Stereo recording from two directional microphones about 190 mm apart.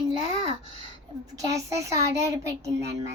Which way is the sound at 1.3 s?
15° right (ahead or behind).